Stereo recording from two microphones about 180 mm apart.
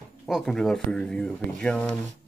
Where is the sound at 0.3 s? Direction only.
Centre (ahead or behind).